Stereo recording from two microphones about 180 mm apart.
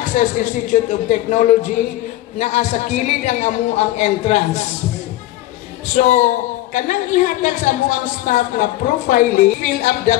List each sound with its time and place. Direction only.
0.1 s a woman's voice: 45° left (ahead or behind)
5.9 s a woman's voice: 45° left (ahead or behind)